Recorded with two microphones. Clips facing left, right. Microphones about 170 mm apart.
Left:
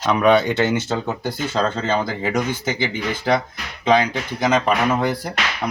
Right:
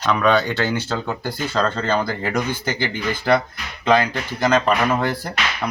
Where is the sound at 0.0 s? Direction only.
20° left (ahead or behind).